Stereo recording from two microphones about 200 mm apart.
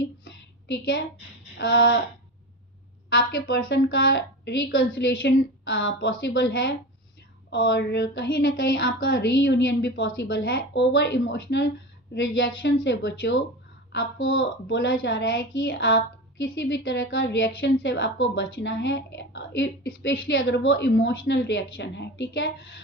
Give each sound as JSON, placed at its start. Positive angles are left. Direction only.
{"t": 0.3, "sound": "a sound", "side_deg": 70}
{"t": 1.5, "sound": "speech", "side_deg": 60}
{"t": 3.3, "sound": "speech", "side_deg": 65}
{"t": 13.9, "sound": "a woman's voice", "side_deg": 70}